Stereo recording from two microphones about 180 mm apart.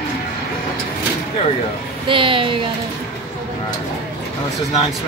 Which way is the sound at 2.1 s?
30° right (ahead or behind).